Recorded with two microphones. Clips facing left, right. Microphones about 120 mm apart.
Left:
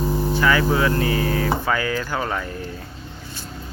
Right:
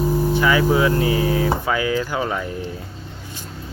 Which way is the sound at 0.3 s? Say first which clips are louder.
Right 1 dB; 15° right (ahead or behind).